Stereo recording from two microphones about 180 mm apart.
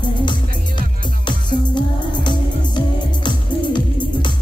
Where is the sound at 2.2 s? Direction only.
25° left (ahead or behind).